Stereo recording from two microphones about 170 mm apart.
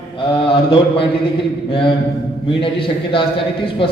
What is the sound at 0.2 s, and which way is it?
Speech, 30° left (ahead or behind).